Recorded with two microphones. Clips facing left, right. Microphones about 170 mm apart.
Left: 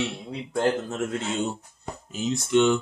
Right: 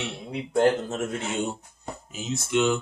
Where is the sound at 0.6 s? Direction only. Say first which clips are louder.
Right 3 dB; 20° right (ahead or behind).